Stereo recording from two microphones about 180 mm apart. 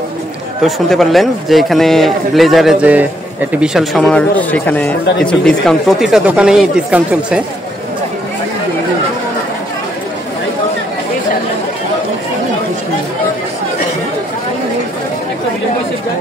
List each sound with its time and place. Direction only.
0.7 s a man's voice: centre (ahead or behind)